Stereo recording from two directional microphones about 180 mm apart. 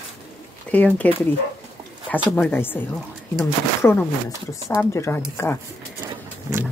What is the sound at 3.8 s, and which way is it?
Speech, 10° left (ahead or behind).